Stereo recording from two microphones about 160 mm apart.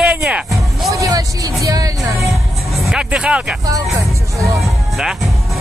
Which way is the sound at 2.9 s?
5° right (ahead or behind).